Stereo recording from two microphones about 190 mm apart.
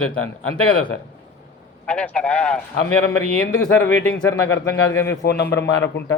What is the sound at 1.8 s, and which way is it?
A man's voice, 5° left (ahead or behind).